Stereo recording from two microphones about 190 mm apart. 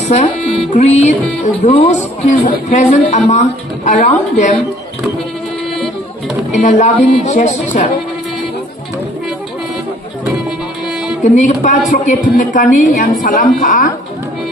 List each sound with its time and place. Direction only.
0.1 s a man's voice: 35° left (ahead or behind)
6.5 s a man's voice: 40° left (ahead or behind)
11.2 s a man's voice: 40° left (ahead or behind)